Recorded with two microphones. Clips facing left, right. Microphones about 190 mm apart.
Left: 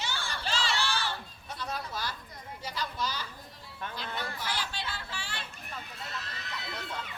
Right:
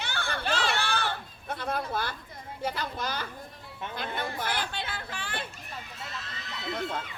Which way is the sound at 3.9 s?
55° right (ahead or behind).